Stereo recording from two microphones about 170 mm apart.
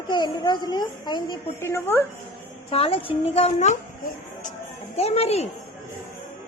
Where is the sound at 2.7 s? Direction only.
35° left (ahead or behind).